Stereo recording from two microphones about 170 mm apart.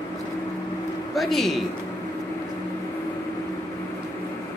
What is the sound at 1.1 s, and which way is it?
Speech, centre (ahead or behind).